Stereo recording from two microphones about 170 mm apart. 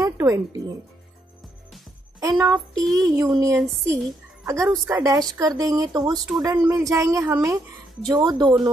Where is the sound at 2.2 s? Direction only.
20° right (ahead or behind).